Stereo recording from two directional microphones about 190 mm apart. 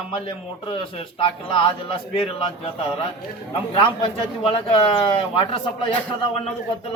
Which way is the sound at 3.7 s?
25° left (ahead or behind).